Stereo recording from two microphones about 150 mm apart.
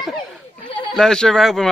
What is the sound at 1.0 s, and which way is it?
Speech, 5° left (ahead or behind).